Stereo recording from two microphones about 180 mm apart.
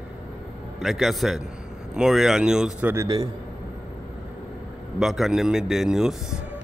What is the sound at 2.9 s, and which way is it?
Speech, 20° right (ahead or behind).